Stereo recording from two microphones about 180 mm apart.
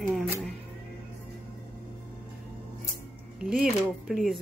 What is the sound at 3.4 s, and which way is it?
Speech, 5° right (ahead or behind).